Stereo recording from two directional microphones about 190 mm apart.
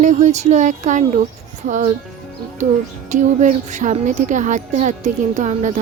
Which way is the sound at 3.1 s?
40° right (ahead or behind).